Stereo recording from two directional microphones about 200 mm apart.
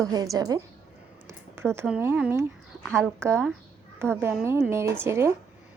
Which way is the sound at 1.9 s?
10° right (ahead or behind).